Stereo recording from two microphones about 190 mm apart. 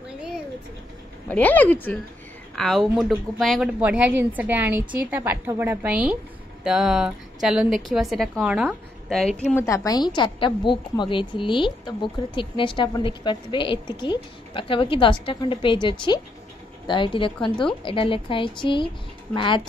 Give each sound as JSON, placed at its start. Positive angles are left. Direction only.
{"t": 1.3, "sound": "a woman's voice", "side_deg": 10}